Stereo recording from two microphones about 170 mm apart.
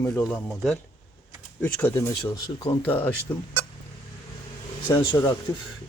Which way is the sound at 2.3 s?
25° left (ahead or behind).